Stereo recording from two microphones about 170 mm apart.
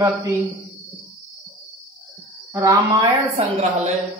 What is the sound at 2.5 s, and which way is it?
Mantra, 20° right (ahead or behind).